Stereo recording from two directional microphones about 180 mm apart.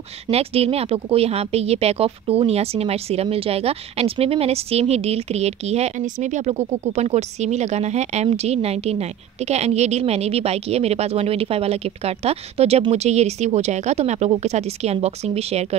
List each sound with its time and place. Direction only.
0.3 s a woman's voice: 35° right (ahead or behind)